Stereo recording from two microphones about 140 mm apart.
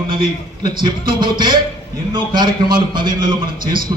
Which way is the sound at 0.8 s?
35° right (ahead or behind).